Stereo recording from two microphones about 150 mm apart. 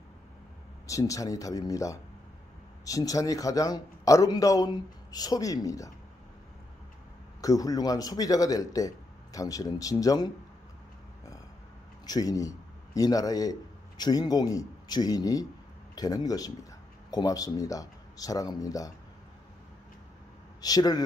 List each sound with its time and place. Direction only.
0.8 s a man's voice: 20° left (ahead or behind)
7.4 s a man's voice: 25° left (ahead or behind)
12.1 s a man's voice: 25° left (ahead or behind)
20.6 s a man's voice: 25° left (ahead or behind)